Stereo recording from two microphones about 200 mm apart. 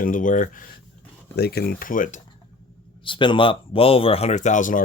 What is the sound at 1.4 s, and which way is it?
Speech, 50° left (ahead or behind).